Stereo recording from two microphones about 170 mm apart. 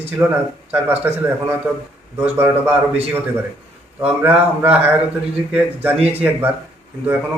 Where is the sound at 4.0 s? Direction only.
10° right (ahead or behind).